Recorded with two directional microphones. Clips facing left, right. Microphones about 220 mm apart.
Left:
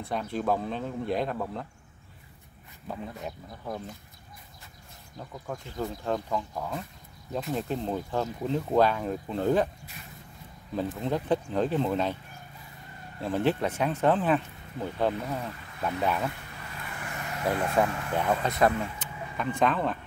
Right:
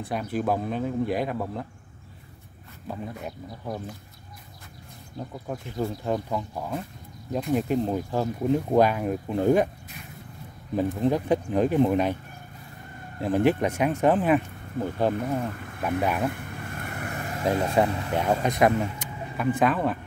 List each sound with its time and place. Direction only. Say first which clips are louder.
0.0 s speech: right 3 dB; 10° right (ahead or behind)
2.9 s speech: right 2 dB; 5° right (ahead or behind)
5.8 s speech: right 3 dB; 15° right (ahead or behind)
10.7 s speech: right 6 dB; 15° right (ahead or behind)
13.2 s speech: right 4 dB; 15° right (ahead or behind)
15.4 s speech: right 6 dB; 50° right (ahead or behind)
16.0 s speech: right 2 dB; 15° right (ahead or behind)
16.3 s vehicle: right 7 dB; 50° right (ahead or behind)
17.5 s speech: right 3 dB; 25° right (ahead or behind); by 20.0 s 10° right (ahead or behind)